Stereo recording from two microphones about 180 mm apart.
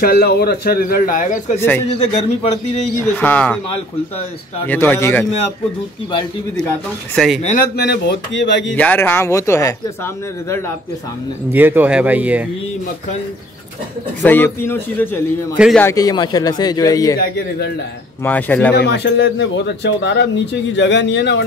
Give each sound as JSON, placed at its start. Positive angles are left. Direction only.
{"t": 0.0, "sound": "a man's voice", "side_deg": 60}
{"t": 1.9, "sound": "a man's voice", "side_deg": 35}
{"t": 3.2, "sound": "speech", "side_deg": 10}
{"t": 4.6, "sound": "speech", "side_deg": 10}
{"t": 7.7, "sound": "speech", "side_deg": 65}
{"t": 8.7, "sound": "speech", "side_deg": 10}
{"t": 11.5, "sound": "speech", "side_deg": -10}
{"t": 14.2, "sound": "speech", "side_deg": 10}
{"t": 15.5, "sound": "speech", "side_deg": -5}
{"t": 15.8, "sound": "speech", "side_deg": 20}
{"t": 17.2, "sound": "a man's voice", "side_deg": 65}
{"t": 18.2, "sound": "speech", "side_deg": 10}
{"t": 18.8, "sound": "a man's voice", "side_deg": 70}